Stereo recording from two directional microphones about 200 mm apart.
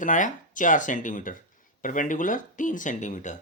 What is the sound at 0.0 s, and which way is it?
Speech, 40° left (ahead or behind).